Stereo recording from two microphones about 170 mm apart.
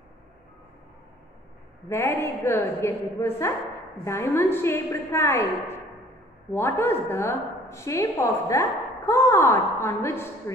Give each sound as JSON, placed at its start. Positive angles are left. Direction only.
{"t": 1.9, "sound": "a woman's voice", "side_deg": 15}
{"t": 6.5, "sound": "a woman's voice", "side_deg": 15}